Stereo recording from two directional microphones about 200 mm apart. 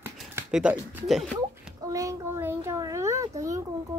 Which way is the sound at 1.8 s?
15° right (ahead or behind).